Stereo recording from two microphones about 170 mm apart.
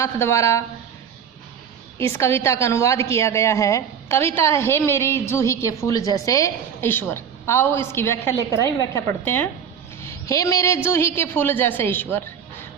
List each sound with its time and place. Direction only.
0.0 s a woman's voice: 15° left (ahead or behind)
2.0 s a woman's voice: 15° left (ahead or behind)